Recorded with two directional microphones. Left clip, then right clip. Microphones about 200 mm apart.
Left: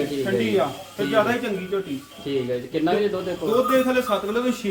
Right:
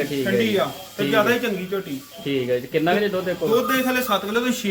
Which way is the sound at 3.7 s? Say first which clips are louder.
Left 1 dB; 15° right (ahead or behind).